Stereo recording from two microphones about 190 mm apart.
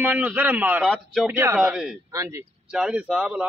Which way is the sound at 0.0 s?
10° right (ahead or behind).